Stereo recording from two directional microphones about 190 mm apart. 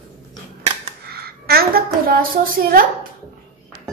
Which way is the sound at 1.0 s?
55° right (ahead or behind).